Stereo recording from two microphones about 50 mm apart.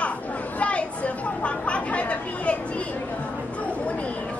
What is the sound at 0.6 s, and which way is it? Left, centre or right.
Chatter, left.